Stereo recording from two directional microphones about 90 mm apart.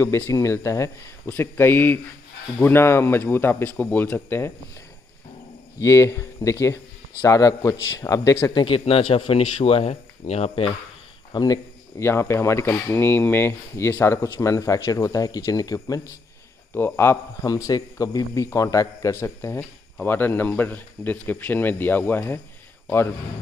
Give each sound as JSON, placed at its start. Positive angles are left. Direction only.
{"t": 0.0, "sound": "speech", "side_deg": 30}
{"t": 5.8, "sound": "speech", "side_deg": 35}
{"t": 8.6, "sound": "a man's voice", "side_deg": 90}
{"t": 11.3, "sound": "speech", "side_deg": 45}
{"t": 12.0, "sound": "speech", "side_deg": 30}
{"t": 16.7, "sound": "speech", "side_deg": 25}
{"t": 17.4, "sound": "speech", "side_deg": 40}